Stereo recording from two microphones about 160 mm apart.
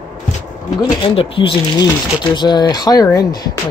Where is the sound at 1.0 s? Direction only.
35° left (ahead or behind).